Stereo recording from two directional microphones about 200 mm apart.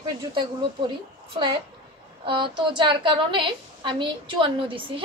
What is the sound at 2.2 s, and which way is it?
A woman's voice, 25° right (ahead or behind).